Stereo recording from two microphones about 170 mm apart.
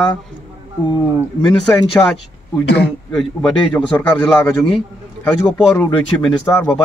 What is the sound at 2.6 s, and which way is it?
Speech, 75° left (ahead or behind).